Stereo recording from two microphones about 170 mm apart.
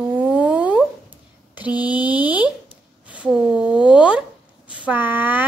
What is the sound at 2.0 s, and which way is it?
A woman's voice, 10° right (ahead or behind).